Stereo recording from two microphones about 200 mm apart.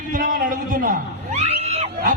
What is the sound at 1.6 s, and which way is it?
Screaming, 30° right (ahead or behind).